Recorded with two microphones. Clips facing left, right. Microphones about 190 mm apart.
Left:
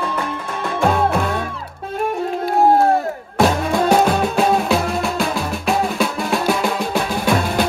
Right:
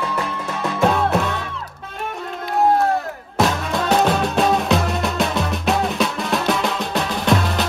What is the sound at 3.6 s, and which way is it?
Music, 50° left (ahead or behind).